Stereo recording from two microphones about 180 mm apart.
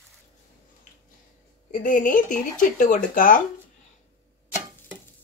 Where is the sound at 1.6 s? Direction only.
50° left (ahead or behind).